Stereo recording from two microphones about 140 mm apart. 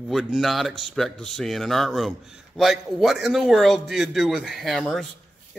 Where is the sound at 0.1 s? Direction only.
Centre (ahead or behind).